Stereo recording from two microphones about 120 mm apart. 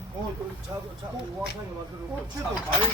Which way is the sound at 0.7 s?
30° right (ahead or behind).